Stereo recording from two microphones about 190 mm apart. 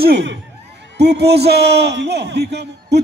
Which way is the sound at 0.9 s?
60° right (ahead or behind).